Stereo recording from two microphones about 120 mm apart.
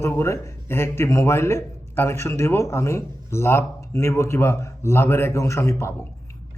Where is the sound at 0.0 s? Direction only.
20° left (ahead or behind).